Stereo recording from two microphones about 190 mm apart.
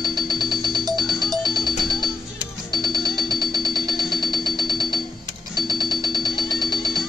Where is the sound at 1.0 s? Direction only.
20° left (ahead or behind).